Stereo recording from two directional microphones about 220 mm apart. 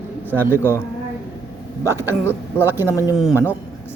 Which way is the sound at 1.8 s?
10° right (ahead or behind).